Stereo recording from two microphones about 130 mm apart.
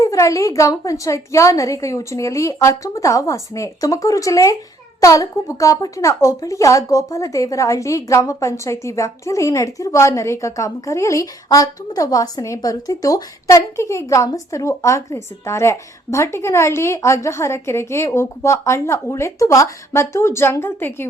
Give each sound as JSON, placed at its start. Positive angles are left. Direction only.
{"t": 0.0, "sound": "a woman's voice", "side_deg": 25}